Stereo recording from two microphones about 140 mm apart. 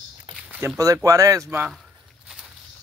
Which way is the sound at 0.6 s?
25° right (ahead or behind).